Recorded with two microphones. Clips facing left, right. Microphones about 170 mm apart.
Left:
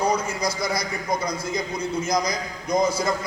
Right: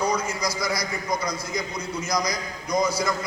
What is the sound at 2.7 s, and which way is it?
Speech, 25° left (ahead or behind).